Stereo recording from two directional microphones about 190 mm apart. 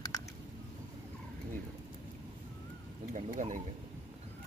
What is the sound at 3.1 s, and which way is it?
Speech, 40° right (ahead or behind).